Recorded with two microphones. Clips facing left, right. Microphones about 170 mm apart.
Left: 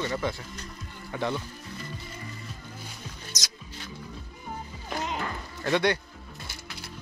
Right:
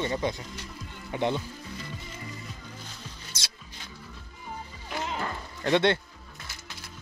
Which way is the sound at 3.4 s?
30° right (ahead or behind).